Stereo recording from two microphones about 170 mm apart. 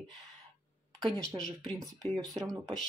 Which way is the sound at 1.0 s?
5° left (ahead or behind).